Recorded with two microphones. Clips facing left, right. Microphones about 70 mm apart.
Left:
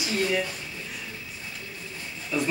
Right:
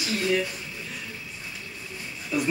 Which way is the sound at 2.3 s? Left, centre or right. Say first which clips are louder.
Right 1 dB; centre.